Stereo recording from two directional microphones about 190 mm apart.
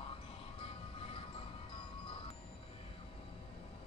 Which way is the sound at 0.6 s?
30° left (ahead or behind).